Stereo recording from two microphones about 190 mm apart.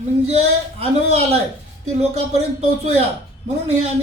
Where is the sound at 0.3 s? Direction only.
35° right (ahead or behind).